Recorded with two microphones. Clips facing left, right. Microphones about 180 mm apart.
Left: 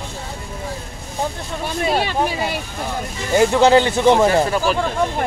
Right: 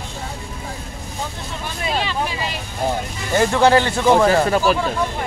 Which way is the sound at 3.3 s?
15° left (ahead or behind).